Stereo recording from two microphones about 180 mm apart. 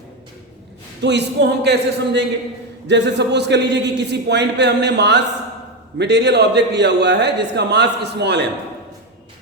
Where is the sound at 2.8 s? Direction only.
75° right (ahead or behind).